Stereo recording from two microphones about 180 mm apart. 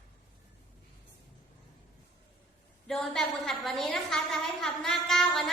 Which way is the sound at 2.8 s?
Centre (ahead or behind).